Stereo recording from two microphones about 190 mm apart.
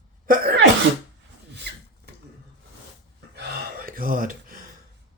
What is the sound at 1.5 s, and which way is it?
Rub, 65° right (ahead or behind).